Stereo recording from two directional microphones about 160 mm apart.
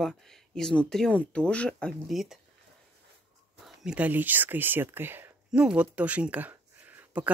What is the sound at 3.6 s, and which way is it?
Speech, 5° right (ahead or behind).